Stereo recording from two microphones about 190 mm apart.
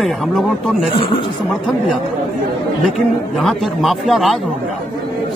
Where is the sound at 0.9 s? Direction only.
25° left (ahead or behind).